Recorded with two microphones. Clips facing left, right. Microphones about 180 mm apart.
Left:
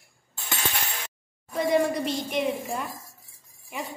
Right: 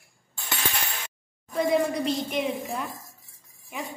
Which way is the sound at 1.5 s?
Centre (ahead or behind).